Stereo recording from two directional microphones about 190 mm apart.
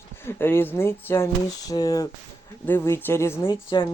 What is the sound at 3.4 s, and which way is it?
Speech, 25° left (ahead or behind).